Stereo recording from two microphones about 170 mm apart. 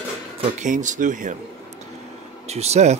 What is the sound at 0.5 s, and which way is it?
Speech, 50° right (ahead or behind).